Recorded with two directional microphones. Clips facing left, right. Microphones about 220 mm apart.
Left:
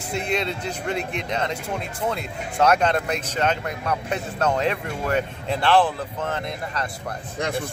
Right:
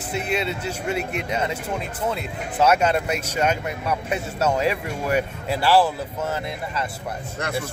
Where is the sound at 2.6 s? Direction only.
5° right (ahead or behind).